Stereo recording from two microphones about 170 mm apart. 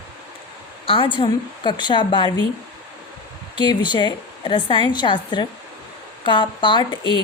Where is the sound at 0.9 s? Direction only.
30° left (ahead or behind).